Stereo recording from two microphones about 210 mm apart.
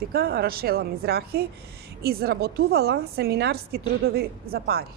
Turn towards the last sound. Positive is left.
turn(degrees=-45)  # may be behind; listen again after turning